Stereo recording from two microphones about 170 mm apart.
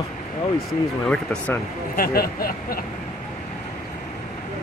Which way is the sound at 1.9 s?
60° left (ahead or behind).